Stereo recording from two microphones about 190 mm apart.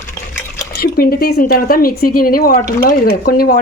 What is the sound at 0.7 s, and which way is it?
A woman's voice, 50° left (ahead or behind).